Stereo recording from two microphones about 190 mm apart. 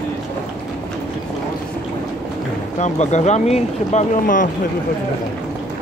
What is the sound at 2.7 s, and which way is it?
Speech, 35° left (ahead or behind).